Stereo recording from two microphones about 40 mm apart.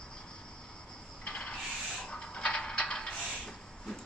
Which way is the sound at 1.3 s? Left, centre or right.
Left.